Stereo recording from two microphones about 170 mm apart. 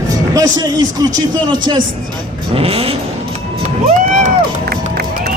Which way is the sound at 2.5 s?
35° right (ahead or behind).